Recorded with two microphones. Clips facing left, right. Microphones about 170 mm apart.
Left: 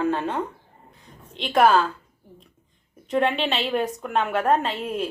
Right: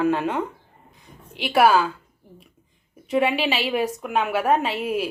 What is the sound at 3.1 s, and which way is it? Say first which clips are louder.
A woman's voice: right 1 dB; 5° right (ahead or behind).